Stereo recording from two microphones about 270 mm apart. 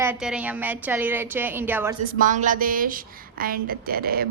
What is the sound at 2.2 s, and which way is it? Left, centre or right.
A woman's voice, right.